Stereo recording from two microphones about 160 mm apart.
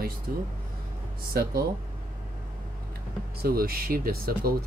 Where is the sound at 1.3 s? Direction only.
75° right (ahead or behind).